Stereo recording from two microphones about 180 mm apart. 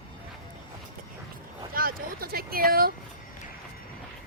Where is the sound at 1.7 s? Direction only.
55° right (ahead or behind).